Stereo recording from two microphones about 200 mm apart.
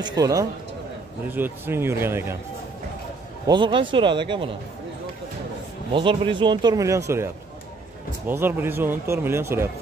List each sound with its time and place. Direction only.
0.0 s a man's voice: 20° right (ahead or behind)
3.4 s speech: 25° right (ahead or behind)
5.9 s speech: 25° right (ahead or behind)
8.3 s a man's voice: 10° right (ahead or behind)